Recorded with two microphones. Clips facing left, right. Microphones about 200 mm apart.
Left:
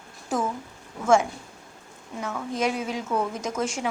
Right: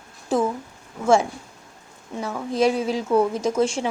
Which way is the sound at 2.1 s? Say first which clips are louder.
Right 6 dB; 35° right (ahead or behind).